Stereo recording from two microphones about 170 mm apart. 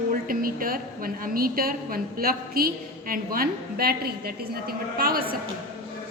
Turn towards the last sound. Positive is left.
turn(degrees=-60)  # may be behind; listen again after turning